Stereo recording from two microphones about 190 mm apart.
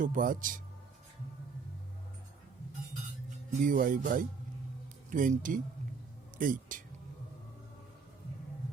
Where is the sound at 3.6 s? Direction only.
45° right (ahead or behind).